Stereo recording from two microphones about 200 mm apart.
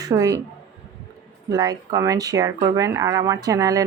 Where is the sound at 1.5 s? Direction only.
20° right (ahead or behind).